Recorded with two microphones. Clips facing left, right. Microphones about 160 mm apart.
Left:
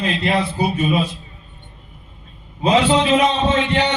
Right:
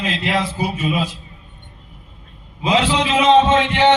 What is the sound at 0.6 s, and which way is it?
Speech, 90° right.